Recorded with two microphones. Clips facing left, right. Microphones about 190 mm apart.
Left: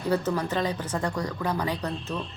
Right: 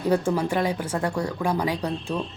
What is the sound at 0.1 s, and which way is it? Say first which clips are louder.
A woman's voice: right 3 dB; 10° right (ahead or behind).